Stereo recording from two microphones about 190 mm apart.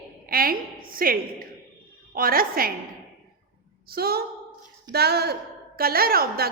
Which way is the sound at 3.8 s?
55° right (ahead or behind).